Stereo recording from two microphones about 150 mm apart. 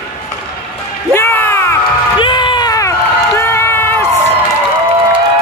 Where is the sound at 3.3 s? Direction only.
15° left (ahead or behind).